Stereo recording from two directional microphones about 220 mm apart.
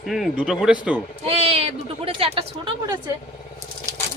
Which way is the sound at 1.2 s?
25° right (ahead or behind).